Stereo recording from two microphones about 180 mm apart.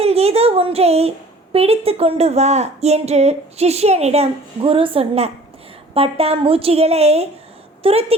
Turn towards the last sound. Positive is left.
turn(degrees=-30)  # may be behind; listen again after turning